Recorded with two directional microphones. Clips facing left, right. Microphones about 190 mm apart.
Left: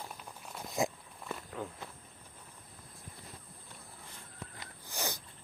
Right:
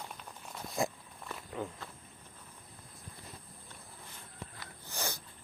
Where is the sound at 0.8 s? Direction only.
20° left (ahead or behind).